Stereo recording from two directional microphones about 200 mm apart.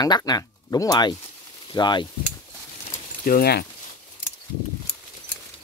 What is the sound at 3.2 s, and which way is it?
Speech, 50° left (ahead or behind).